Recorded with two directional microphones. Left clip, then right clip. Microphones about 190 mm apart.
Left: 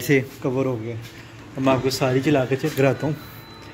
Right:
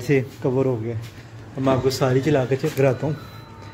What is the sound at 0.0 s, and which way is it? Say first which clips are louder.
Speech: left 1 dB; 5° right (ahead or behind).